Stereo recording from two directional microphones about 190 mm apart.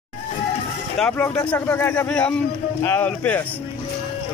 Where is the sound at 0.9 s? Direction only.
5° left (ahead or behind).